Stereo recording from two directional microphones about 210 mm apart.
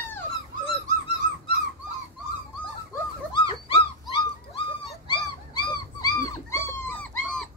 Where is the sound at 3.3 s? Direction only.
25° left (ahead or behind); by 7.5 s 5° left (ahead or behind).